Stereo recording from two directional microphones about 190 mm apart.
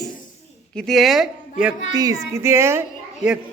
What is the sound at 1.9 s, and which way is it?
Speech, 20° right (ahead or behind).